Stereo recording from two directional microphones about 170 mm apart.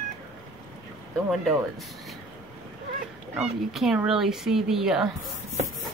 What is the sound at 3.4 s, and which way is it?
Speech, 5° right (ahead or behind).